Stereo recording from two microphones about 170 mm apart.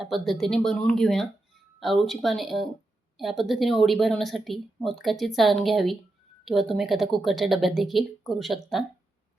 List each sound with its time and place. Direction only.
0.0 s speech: centre (ahead or behind)